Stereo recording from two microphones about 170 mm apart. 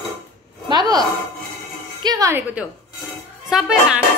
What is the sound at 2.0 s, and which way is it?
Speech, 20° right (ahead or behind).